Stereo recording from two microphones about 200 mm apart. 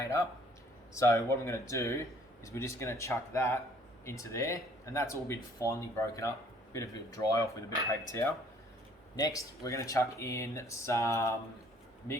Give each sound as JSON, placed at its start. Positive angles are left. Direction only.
{"t": 0.0, "sound": "speech", "side_deg": 15}